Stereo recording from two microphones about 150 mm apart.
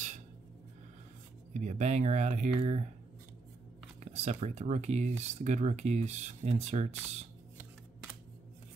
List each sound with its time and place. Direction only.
1.5 s speech: 50° right (ahead or behind)
4.0 s speech: 45° right (ahead or behind)